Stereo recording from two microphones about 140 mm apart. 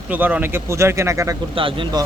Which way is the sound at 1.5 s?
35° right (ahead or behind).